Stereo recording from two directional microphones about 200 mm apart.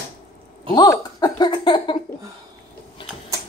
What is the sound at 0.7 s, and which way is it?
Speech, 20° left (ahead or behind).